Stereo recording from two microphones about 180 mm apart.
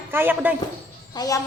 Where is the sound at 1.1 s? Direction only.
20° left (ahead or behind).